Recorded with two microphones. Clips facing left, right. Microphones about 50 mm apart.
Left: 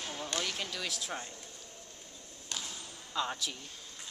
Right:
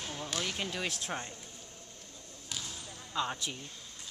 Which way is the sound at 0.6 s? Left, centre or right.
Right.